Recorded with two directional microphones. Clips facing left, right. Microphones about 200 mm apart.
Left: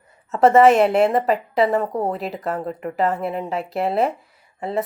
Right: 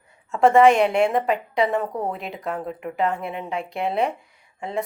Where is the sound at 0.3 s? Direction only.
Centre (ahead or behind).